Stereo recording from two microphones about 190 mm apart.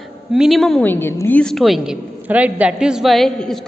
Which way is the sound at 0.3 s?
Centre (ahead or behind).